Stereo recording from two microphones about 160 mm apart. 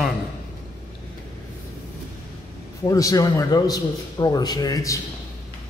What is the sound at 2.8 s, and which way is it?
A man's voice, 20° left (ahead or behind).